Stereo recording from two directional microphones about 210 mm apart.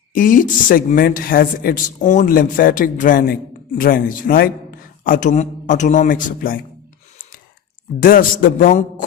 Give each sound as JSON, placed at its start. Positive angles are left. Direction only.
{"t": 0.1, "sound": "a man's voice", "side_deg": 40}
{"t": 7.9, "sound": "a man's voice", "side_deg": 40}